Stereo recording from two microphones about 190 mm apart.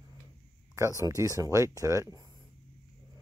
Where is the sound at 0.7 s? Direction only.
15° right (ahead or behind).